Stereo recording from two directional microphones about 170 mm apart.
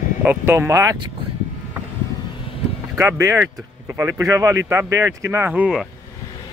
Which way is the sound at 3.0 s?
15° right (ahead or behind).